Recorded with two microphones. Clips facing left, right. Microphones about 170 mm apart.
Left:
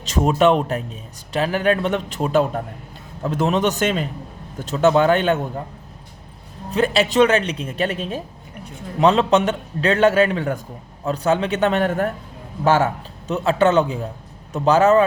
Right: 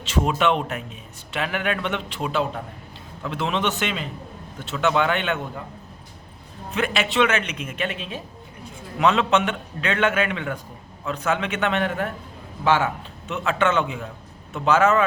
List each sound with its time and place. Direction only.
0.0 s a man's voice: 40° left (ahead or behind)
6.7 s a man's voice: 35° left (ahead or behind)